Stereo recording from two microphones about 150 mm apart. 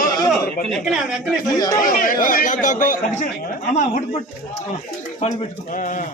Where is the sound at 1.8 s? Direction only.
65° left (ahead or behind).